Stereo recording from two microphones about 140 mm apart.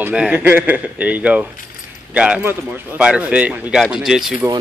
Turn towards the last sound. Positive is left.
turn(degrees=-5)  # may be behind; listen again after turning